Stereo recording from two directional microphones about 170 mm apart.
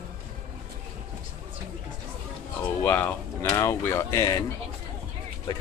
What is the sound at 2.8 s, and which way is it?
Speech, 10° left (ahead or behind).